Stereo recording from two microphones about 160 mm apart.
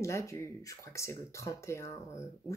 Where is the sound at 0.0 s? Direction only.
15° left (ahead or behind).